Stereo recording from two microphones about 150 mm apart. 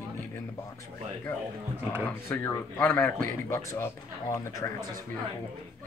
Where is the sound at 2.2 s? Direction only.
15° left (ahead or behind).